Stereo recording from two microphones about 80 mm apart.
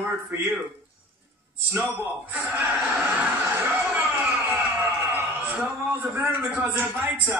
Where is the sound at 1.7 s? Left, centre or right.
Centre.